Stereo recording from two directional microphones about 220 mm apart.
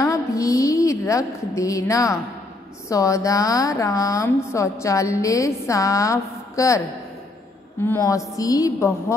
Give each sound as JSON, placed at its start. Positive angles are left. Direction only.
{"t": 0.0, "sound": "a sound", "side_deg": 15}
{"t": 2.9, "sound": "a woman's voice", "side_deg": 15}
{"t": 7.8, "sound": "a woman's voice", "side_deg": 10}